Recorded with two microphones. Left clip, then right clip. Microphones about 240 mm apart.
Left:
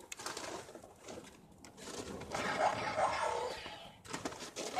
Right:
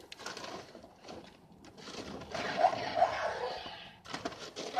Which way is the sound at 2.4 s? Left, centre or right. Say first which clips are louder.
Right 5 dB; centre.